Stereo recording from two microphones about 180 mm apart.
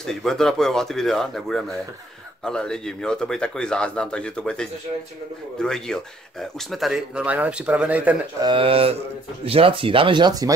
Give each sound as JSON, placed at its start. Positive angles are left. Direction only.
{"t": 0.0, "sound": "speech", "side_deg": 0}
{"t": 8.4, "sound": "speech", "side_deg": -30}